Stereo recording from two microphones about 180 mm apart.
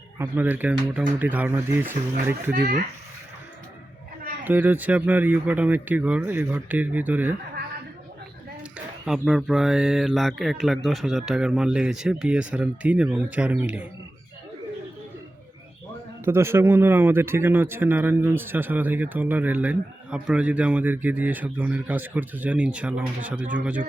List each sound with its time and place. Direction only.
0.2 s speech: 10° right (ahead or behind)
2.5 s speech: 50° right (ahead or behind)
4.4 s speech: 10° right (ahead or behind)
9.0 s speech: 5° right (ahead or behind)
16.2 s speech: 15° right (ahead or behind)